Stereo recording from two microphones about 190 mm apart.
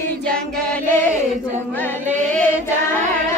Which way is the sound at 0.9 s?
15° left (ahead or behind).